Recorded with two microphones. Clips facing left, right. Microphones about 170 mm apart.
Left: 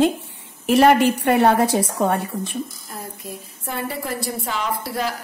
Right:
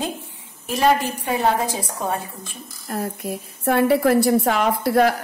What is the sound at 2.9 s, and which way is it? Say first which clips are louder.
A woman's voice: right 7 dB; 70° right (ahead or behind).